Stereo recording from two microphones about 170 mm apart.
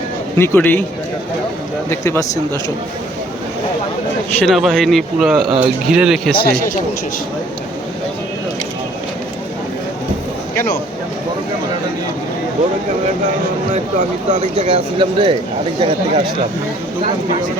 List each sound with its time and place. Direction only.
0.3 s speech: 15° left (ahead or behind)
1.9 s speech: 20° left (ahead or behind)
4.4 s speech: centre (ahead or behind)
6.4 s speech: 60° left (ahead or behind)
14.0 s speech: 45° right (ahead or behind)